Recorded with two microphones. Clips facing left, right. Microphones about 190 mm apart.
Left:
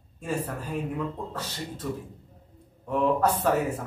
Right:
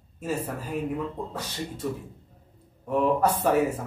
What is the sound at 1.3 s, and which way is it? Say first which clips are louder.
A man's voice: right 1 dB; 10° right (ahead or behind).